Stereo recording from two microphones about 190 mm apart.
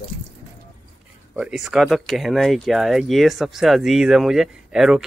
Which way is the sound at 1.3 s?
Centre (ahead or behind).